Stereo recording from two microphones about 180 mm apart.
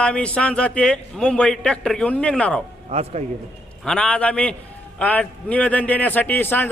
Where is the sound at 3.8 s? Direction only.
5° left (ahead or behind).